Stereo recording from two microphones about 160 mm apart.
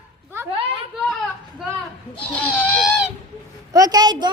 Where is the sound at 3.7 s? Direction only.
25° right (ahead or behind).